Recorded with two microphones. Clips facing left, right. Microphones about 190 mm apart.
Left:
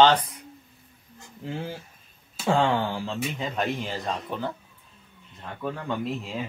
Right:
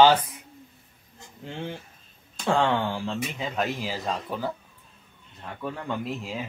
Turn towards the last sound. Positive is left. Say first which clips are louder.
# left 2 dB
turn(degrees=0)  # may be behind; listen again after turning